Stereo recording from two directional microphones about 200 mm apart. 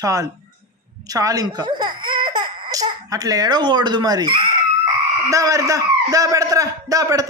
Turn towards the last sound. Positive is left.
turn(degrees=-15)  # may be behind; listen again after turning